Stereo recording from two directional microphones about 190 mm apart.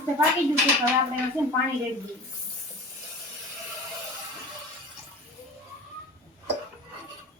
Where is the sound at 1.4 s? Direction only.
15° right (ahead or behind).